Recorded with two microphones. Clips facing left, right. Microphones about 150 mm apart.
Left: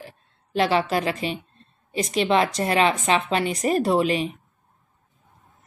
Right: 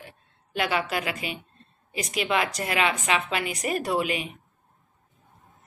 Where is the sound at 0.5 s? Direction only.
30° left (ahead or behind).